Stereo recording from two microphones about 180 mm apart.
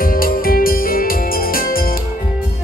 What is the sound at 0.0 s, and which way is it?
Music, 55° left (ahead or behind).